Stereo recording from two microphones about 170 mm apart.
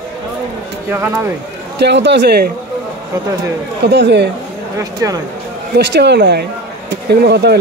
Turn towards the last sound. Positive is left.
turn(degrees=-75)  # may be behind; listen again after turning